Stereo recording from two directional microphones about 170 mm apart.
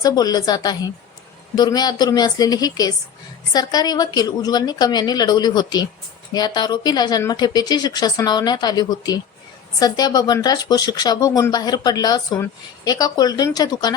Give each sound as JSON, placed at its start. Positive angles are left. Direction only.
{"t": 0.0, "sound": "speech", "side_deg": 25}